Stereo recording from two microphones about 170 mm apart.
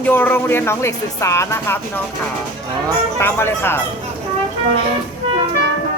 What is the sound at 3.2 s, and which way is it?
Speech, 15° left (ahead or behind).